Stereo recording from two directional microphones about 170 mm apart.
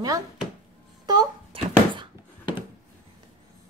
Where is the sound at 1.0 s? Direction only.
25° right (ahead or behind).